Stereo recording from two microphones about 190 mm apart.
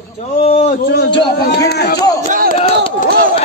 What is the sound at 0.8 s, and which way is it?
A man's voice, 65° left (ahead or behind).